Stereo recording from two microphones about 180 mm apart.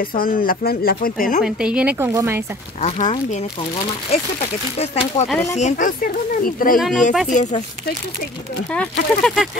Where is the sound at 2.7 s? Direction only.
40° left (ahead or behind).